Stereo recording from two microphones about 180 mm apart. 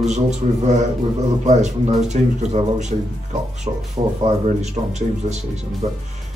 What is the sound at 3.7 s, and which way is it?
Speech, 30° right (ahead or behind).